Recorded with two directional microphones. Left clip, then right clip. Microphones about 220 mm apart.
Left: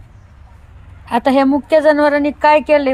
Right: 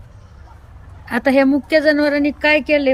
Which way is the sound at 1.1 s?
10° right (ahead or behind).